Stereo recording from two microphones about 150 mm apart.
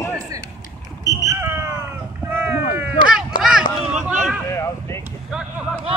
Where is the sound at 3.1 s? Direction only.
5° right (ahead or behind).